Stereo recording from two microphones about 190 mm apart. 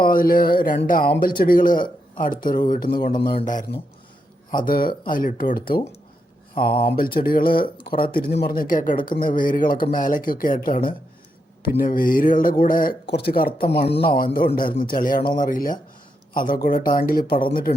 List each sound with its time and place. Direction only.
0.0 s speech: 50° left (ahead or behind)
3.2 s a man's voice: 30° left (ahead or behind)
3.4 s speech: 45° left (ahead or behind)
6.9 s speech: 50° left (ahead or behind)